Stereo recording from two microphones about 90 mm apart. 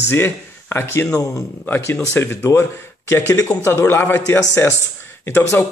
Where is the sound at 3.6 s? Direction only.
25° left (ahead or behind).